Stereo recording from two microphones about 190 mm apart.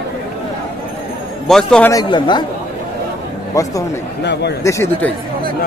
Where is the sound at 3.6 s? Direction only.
20° left (ahead or behind).